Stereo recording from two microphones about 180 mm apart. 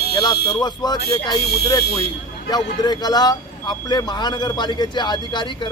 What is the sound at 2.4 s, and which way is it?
Speech, 20° left (ahead or behind).